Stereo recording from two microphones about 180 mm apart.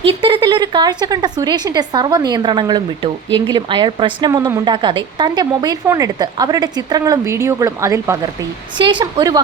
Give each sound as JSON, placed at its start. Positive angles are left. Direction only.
{"t": 0.2, "sound": "a woman's voice", "side_deg": -30}
{"t": 8.8, "sound": "a woman's voice", "side_deg": -25}